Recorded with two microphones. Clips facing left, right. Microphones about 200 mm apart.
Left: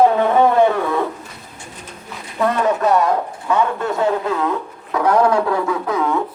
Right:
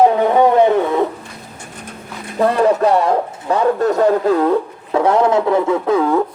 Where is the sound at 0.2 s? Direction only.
15° right (ahead or behind).